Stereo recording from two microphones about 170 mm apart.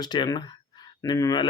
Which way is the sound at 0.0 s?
25° left (ahead or behind).